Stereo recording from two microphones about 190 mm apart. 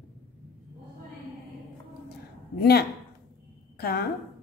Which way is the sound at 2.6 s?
55° left (ahead or behind).